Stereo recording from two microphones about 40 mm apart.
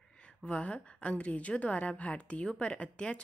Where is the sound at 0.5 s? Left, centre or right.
Left.